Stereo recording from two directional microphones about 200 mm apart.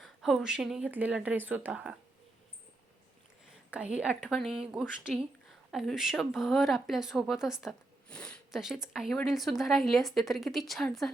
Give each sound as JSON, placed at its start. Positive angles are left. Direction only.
{"t": 0.0, "sound": "speech", "side_deg": 0}
{"t": 3.7, "sound": "a woman's voice", "side_deg": -5}